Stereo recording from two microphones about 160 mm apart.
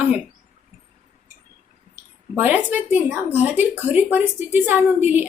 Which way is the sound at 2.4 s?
10° right (ahead or behind).